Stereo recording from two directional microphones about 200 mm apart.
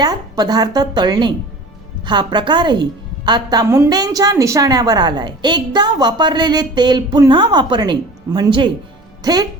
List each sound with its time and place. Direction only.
0.0 s a woman's voice: 20° right (ahead or behind)